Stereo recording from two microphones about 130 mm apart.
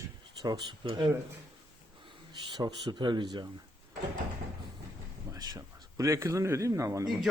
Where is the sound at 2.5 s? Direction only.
35° right (ahead or behind).